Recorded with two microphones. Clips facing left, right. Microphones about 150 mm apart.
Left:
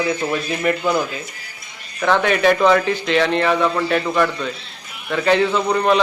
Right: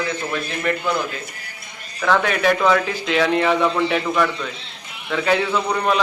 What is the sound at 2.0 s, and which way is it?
Speech, centre (ahead or behind).